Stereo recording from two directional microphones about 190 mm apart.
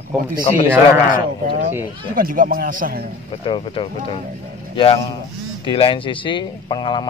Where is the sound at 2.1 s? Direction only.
45° right (ahead or behind).